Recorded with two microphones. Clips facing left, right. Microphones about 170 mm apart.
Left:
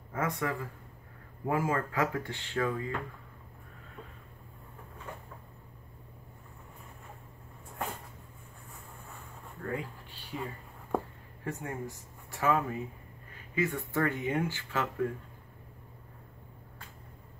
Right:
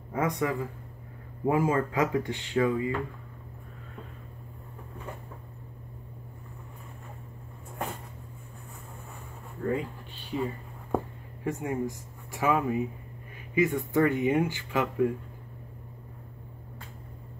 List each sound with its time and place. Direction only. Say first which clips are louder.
0.1 s speech: right 5 dB; 20° right (ahead or behind)
9.7 s speech: right 7 dB; 20° right (ahead or behind)
11.4 s speech: right 7 dB; 15° right (ahead or behind)